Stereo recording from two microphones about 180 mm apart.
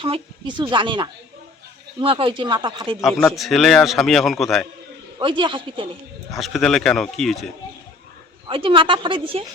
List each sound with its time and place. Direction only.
0.0 s speech: 25° right (ahead or behind)
3.3 s a man's voice: centre (ahead or behind)
5.2 s speech: 25° right (ahead or behind)
6.3 s a man's voice: centre (ahead or behind)
8.4 s speech: 30° right (ahead or behind)